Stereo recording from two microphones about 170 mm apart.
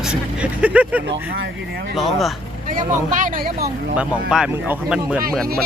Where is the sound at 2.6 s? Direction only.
50° right (ahead or behind).